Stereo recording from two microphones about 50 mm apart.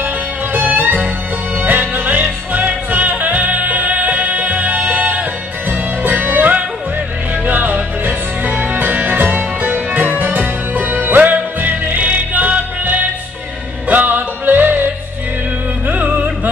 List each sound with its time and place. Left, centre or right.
0.0 s music: right
15.9 s music: right